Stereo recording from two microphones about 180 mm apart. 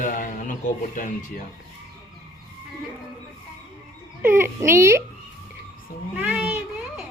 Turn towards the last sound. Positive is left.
turn(degrees=-10)  # may be behind; listen again after turning